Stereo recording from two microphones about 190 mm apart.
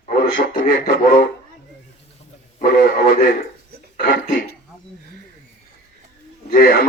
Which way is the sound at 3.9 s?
50° left (ahead or behind).